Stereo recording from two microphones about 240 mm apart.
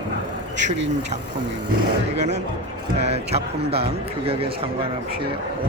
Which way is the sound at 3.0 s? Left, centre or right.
Right.